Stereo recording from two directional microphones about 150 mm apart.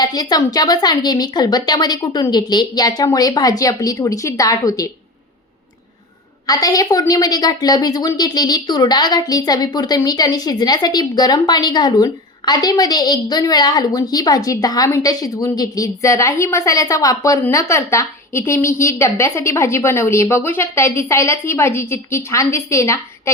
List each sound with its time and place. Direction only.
0.0 s a woman's voice: 25° left (ahead or behind)
6.5 s a woman's voice: 25° left (ahead or behind)